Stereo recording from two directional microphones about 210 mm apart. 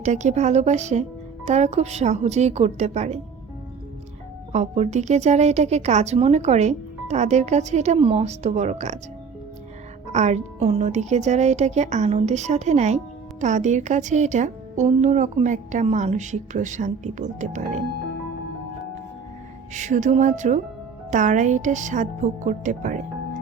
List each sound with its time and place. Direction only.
0.0 s speech: 35° right (ahead or behind)
4.5 s speech: 35° right (ahead or behind)
10.1 s speech: 35° right (ahead or behind)
19.7 s speech: 35° right (ahead or behind)